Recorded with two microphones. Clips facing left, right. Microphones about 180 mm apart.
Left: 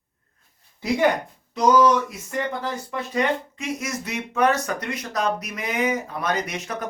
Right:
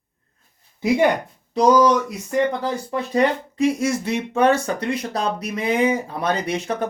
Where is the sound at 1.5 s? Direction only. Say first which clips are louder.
Right 2 dB; 35° right (ahead or behind).